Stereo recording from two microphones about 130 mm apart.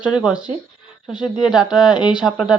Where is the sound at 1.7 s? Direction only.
35° left (ahead or behind).